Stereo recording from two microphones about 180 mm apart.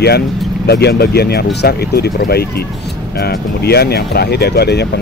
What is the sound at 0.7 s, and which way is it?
Speech, 65° left (ahead or behind).